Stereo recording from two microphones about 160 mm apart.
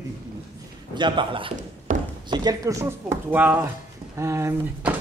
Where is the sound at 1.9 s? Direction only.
55° right (ahead or behind).